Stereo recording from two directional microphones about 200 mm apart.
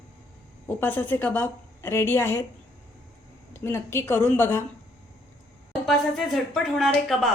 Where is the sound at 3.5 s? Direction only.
10° left (ahead or behind).